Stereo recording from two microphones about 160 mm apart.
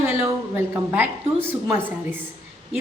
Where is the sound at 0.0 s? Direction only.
15° right (ahead or behind).